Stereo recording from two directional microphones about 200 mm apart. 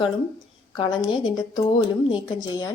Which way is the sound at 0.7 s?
20° left (ahead or behind).